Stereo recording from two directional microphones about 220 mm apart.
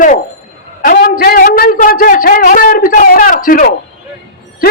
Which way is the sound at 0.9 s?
45° left (ahead or behind).